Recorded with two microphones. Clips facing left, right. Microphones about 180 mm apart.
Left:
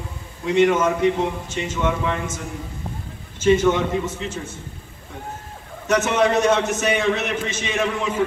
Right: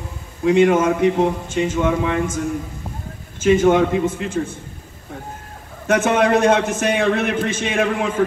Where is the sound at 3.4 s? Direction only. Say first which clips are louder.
Right 3 dB; 50° right (ahead or behind).